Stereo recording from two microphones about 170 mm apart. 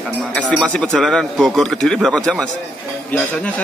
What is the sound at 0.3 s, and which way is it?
A man's voice, 5° left (ahead or behind).